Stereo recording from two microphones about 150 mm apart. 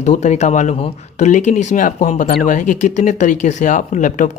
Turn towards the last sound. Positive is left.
turn(degrees=55)  # may be behind; listen again after turning